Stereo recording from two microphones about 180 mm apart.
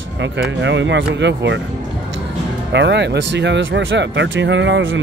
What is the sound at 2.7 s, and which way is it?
Speech, 75° right (ahead or behind).